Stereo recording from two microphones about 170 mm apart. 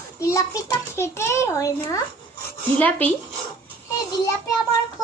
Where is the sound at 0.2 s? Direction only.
20° left (ahead or behind).